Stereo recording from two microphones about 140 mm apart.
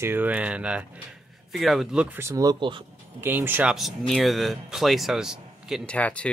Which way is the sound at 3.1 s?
15° right (ahead or behind).